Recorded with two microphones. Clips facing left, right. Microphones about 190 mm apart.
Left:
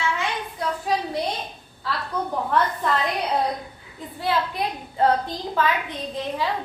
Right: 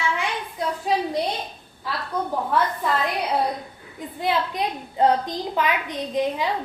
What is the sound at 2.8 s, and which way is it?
Speech, 5° right (ahead or behind).